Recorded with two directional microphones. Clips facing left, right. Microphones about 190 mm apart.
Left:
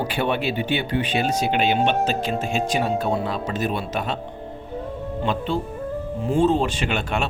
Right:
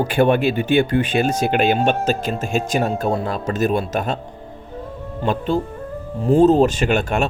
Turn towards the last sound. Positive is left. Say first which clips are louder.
# right 6 dB
turn(degrees=-45)  # may be behind; listen again after turning